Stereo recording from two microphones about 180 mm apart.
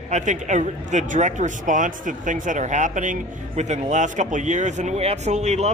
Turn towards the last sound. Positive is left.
turn(degrees=-40)  # may be behind; listen again after turning